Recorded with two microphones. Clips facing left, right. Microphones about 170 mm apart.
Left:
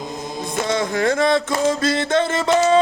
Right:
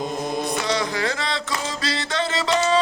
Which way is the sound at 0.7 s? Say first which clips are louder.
Left 9 dB; 50° left (ahead or behind).